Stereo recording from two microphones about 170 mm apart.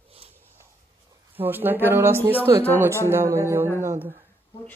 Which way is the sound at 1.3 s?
10° right (ahead or behind).